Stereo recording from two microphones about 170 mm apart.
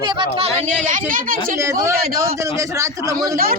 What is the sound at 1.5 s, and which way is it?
A man's voice, 15° right (ahead or behind).